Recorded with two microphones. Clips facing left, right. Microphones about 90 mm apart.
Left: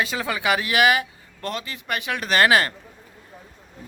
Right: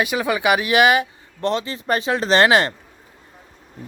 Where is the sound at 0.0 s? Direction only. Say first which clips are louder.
Right 5 dB; 15° right (ahead or behind).